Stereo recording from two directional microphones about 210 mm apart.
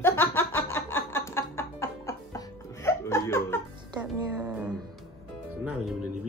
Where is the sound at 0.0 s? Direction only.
10° left (ahead or behind).